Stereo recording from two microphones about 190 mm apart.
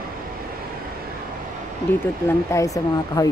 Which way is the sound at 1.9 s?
10° left (ahead or behind).